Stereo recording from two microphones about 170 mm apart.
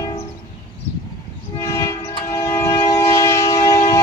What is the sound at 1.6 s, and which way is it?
Train, 20° left (ahead or behind).